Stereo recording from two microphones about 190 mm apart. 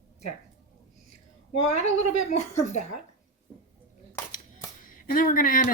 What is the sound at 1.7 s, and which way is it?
A woman's voice, 35° left (ahead or behind).